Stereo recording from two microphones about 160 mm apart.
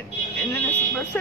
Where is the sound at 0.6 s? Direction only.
10° left (ahead or behind).